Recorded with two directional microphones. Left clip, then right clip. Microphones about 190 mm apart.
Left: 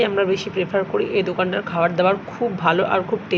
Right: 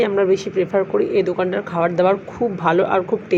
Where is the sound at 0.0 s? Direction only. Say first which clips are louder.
Right 2 dB; 20° right (ahead or behind).